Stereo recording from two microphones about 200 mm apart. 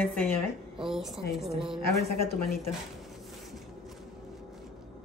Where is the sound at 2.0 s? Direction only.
50° left (ahead or behind).